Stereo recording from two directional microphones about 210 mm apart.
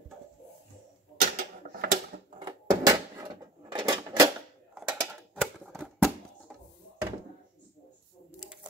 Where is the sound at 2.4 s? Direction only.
20° right (ahead or behind).